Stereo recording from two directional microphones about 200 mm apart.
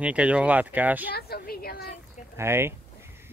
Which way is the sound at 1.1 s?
50° left (ahead or behind).